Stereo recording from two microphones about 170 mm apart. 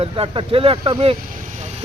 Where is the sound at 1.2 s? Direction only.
55° right (ahead or behind).